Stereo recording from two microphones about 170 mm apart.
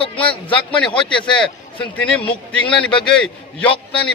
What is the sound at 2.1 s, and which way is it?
Speech, 5° left (ahead or behind).